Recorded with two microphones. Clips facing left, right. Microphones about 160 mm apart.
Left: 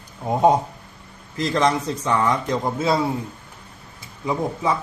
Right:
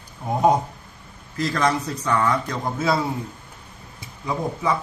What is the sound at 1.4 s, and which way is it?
A man's voice, 25° left (ahead or behind).